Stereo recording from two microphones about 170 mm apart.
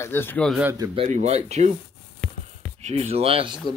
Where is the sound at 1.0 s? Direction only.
45° right (ahead or behind).